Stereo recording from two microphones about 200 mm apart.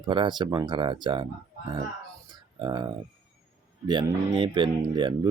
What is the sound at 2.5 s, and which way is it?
Speech, 20° right (ahead or behind).